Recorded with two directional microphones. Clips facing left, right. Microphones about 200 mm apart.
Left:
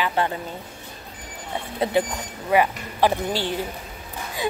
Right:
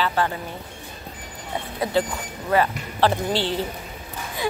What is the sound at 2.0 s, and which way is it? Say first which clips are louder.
Speech: even; 20° left (ahead or behind).